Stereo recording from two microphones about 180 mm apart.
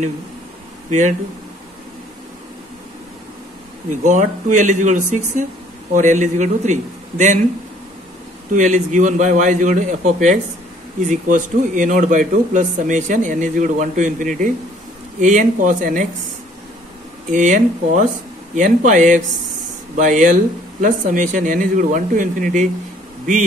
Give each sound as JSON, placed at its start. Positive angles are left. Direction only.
{"t": 0.8, "sound": "speech", "side_deg": -40}
{"t": 4.0, "sound": "a man's voice", "side_deg": -45}
{"t": 8.5, "sound": "a man's voice", "side_deg": -45}
{"t": 17.3, "sound": "a man's voice", "side_deg": -45}